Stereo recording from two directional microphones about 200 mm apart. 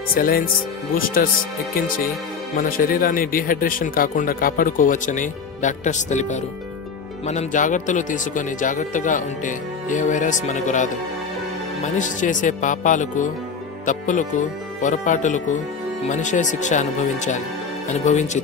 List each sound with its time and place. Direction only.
0.1 s speech: 45° left (ahead or behind)
2.5 s speech: 45° left (ahead or behind)